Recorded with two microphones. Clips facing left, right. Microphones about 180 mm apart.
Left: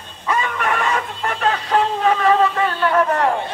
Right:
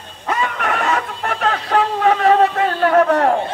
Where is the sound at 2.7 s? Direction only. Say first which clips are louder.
Right 4 dB; 45° right (ahead or behind).